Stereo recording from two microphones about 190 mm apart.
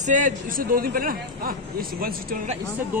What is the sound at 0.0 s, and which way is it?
A man's voice, 40° right (ahead or behind).